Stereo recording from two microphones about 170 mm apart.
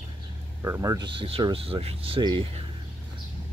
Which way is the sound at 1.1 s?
30° right (ahead or behind).